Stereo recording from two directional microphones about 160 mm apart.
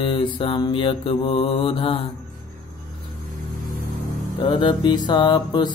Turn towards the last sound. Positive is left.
turn(degrees=30)  # may be behind; listen again after turning